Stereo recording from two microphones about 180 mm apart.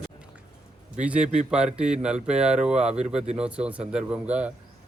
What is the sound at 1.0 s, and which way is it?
Speech, 5° right (ahead or behind).